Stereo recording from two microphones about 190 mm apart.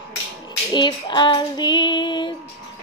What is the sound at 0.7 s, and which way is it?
Child singing, 25° left (ahead or behind).